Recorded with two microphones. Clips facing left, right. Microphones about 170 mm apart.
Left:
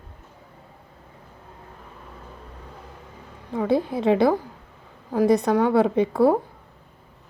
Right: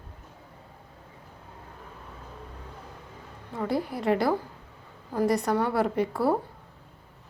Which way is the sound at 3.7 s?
25° left (ahead or behind).